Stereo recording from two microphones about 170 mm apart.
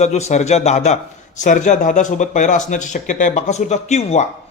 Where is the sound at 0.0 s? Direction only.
40° left (ahead or behind).